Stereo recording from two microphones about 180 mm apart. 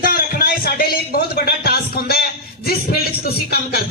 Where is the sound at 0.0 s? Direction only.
55° left (ahead or behind).